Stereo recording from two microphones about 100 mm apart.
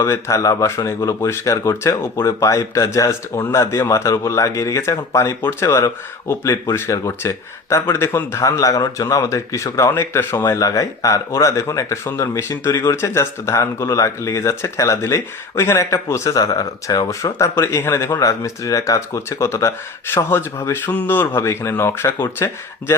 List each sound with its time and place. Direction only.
0.0 s speech: 30° left (ahead or behind)
10.5 s speech: 35° left (ahead or behind)
17.3 s speech: 25° left (ahead or behind)